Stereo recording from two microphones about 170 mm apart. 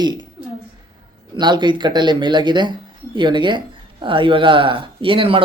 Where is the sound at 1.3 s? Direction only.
25° right (ahead or behind).